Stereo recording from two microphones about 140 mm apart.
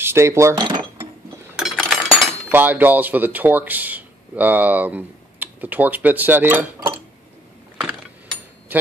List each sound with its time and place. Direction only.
0.0 s speech: 20° right (ahead or behind)
1.6 s a sound: 5° right (ahead or behind)
2.5 s speech: 15° right (ahead or behind)